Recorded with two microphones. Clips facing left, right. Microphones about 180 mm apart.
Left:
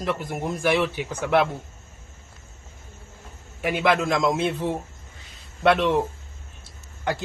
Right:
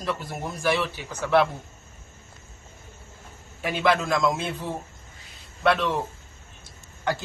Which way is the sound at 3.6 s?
15° left (ahead or behind).